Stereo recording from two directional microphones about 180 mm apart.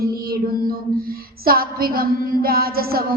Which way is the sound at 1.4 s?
55° right (ahead or behind).